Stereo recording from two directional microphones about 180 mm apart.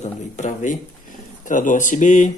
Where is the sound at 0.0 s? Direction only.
40° left (ahead or behind).